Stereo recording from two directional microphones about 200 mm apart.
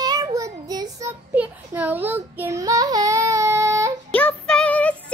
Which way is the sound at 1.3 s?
10° right (ahead or behind).